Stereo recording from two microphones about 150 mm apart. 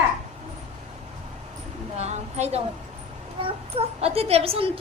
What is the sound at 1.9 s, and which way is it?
A woman's voice, 45° right (ahead or behind).